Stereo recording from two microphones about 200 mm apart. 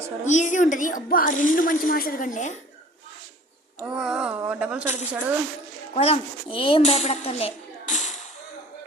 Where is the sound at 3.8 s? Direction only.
5° right (ahead or behind).